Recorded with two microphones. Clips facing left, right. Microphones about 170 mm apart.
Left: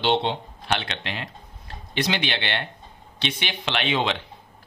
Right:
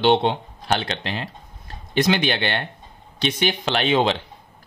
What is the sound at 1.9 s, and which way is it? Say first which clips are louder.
Speech: right 6 dB; 45° right (ahead or behind).